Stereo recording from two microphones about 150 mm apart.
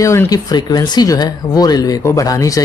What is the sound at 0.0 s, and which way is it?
Speech, 20° left (ahead or behind).